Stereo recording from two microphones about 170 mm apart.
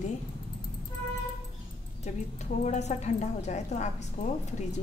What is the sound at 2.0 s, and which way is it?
A woman's voice, 40° left (ahead or behind).